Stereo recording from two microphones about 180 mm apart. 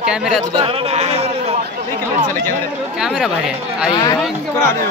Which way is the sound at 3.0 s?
5° right (ahead or behind).